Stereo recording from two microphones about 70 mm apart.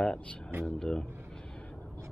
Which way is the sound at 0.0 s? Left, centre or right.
Centre.